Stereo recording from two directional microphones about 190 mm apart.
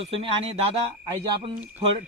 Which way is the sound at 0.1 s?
30° right (ahead or behind).